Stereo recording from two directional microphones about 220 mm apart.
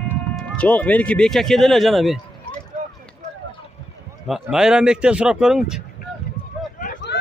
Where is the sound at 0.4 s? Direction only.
5° left (ahead or behind).